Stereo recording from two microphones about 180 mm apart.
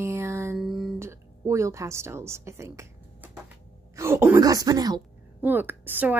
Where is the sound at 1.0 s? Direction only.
15° right (ahead or behind).